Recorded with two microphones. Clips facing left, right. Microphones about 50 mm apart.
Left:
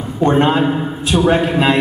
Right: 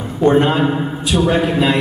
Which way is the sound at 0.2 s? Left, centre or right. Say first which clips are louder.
Right 1 dB; left.